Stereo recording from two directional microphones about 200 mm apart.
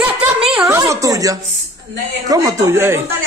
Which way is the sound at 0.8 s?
15° right (ahead or behind).